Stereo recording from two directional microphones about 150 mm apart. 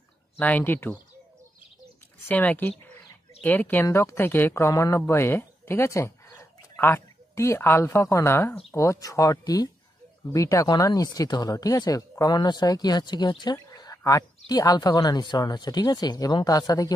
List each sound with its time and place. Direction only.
0.4 s speech: 10° left (ahead or behind)
2.2 s a woman's voice: 10° left (ahead or behind)